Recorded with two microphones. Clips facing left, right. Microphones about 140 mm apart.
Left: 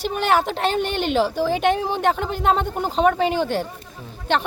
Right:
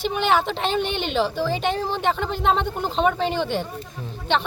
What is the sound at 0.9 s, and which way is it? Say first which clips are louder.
Speech: left 3 dB; 10° left (ahead or behind).